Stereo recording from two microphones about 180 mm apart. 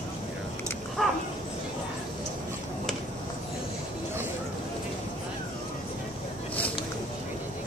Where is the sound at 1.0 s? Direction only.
Centre (ahead or behind).